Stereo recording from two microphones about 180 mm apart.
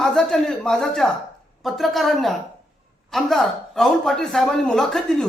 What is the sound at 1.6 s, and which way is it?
Speech, centre (ahead or behind).